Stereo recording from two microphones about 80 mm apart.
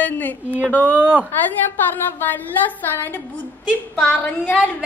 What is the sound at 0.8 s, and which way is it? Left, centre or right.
Speech, centre.